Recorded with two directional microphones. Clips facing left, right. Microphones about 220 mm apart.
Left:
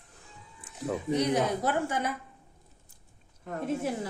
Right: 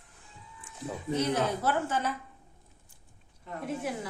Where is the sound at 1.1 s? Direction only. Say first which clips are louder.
Left 1 dB; 15° left (ahead or behind).